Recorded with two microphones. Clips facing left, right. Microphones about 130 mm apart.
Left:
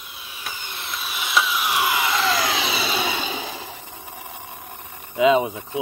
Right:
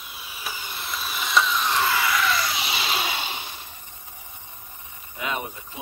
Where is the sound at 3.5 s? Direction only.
90° left.